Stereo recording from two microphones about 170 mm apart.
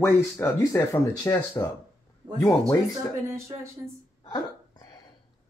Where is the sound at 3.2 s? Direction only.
15° right (ahead or behind).